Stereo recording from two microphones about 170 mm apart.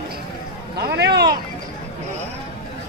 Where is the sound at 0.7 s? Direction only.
75° right (ahead or behind).